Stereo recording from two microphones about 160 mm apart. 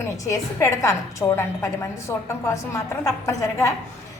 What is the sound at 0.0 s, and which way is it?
A woman's voice, 15° left (ahead or behind).